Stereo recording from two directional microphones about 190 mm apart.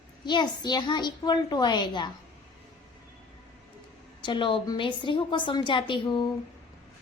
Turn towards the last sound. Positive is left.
turn(degrees=25)  # may be behind; listen again after turning